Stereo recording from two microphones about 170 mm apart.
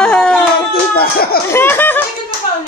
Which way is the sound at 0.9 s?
60° left (ahead or behind).